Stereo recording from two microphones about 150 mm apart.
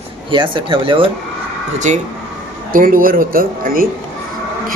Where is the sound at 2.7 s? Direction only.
65° right (ahead or behind).